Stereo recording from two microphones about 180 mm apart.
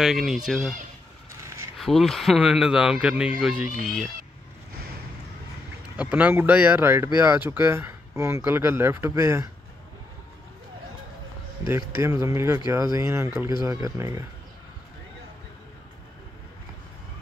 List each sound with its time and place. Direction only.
0.0 s speech: centre (ahead or behind)
1.8 s speech: centre (ahead or behind)
5.9 s speech: 10° right (ahead or behind)
11.6 s speech: 15° right (ahead or behind)